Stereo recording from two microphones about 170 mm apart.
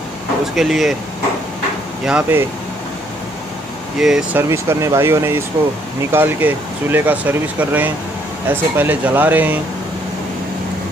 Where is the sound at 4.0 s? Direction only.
5° right (ahead or behind).